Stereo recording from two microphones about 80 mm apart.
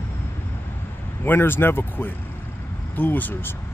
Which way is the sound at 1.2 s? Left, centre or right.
Left.